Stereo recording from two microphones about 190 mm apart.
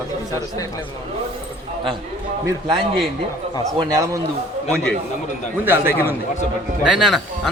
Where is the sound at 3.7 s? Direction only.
25° right (ahead or behind).